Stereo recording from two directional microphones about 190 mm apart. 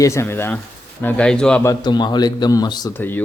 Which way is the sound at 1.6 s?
25° left (ahead or behind).